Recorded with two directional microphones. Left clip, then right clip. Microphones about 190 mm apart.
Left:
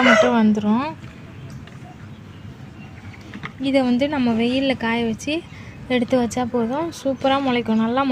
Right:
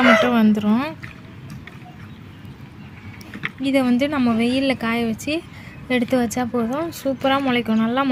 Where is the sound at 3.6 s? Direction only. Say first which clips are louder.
Even; 5° right (ahead or behind).